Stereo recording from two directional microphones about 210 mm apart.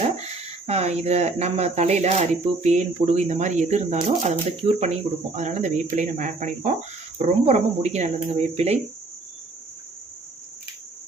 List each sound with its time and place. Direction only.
0.7 s speech: 30° right (ahead or behind)